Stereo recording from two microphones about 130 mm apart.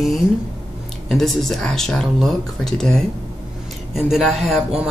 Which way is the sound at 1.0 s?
Centre (ahead or behind).